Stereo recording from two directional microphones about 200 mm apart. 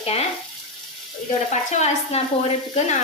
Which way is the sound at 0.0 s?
30° left (ahead or behind).